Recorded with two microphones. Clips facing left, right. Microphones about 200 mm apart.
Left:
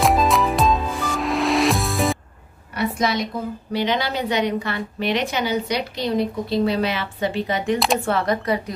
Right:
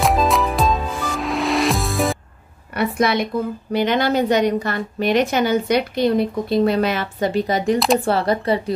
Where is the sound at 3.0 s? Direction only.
60° right (ahead or behind).